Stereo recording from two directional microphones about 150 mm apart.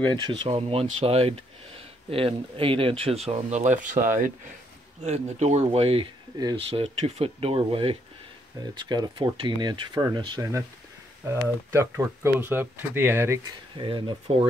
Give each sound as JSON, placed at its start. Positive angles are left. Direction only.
{"t": 0.1, "sound": "speech", "side_deg": -30}
{"t": 5.0, "sound": "speech", "side_deg": -50}
{"t": 6.3, "sound": "speech", "side_deg": -25}
{"t": 6.7, "sound": "speech", "side_deg": -40}
{"t": 11.2, "sound": "speech", "side_deg": -15}
{"t": 13.7, "sound": "speech", "side_deg": -30}